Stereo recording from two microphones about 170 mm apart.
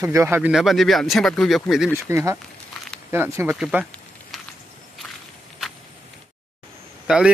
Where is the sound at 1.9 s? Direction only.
15° right (ahead or behind).